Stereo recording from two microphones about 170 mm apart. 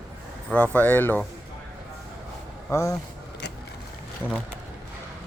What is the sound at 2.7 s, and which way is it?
Speech, 15° left (ahead or behind).